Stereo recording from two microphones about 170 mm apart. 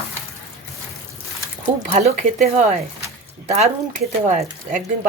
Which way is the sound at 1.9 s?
40° right (ahead or behind).